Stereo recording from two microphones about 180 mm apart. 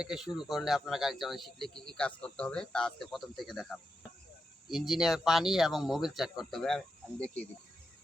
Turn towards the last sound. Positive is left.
turn(degrees=5)  # may be behind; listen again after turning